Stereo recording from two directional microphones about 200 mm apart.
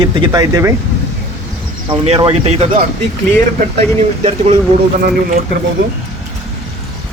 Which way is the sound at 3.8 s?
30° right (ahead or behind).